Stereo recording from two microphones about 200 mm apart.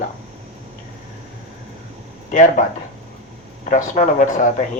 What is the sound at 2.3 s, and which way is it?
Speech, 40° left (ahead or behind).